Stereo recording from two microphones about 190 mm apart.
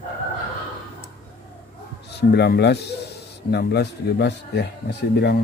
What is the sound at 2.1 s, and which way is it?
Speech, 60° left (ahead or behind).